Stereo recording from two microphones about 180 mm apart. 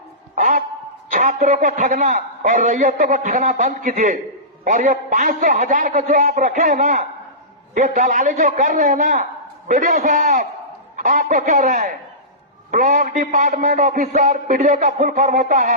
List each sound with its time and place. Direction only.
1.1 s a man's voice: 40° right (ahead or behind)